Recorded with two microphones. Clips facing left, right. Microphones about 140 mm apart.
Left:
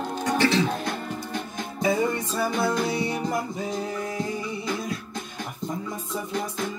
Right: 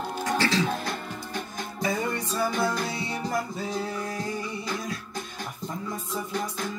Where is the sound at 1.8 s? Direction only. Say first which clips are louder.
Left 5 dB; 20° left (ahead or behind).